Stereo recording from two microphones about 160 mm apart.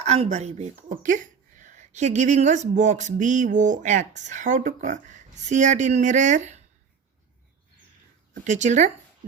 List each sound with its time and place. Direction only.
0.0 s speech: 40° right (ahead or behind)
8.3 s speech: 50° right (ahead or behind)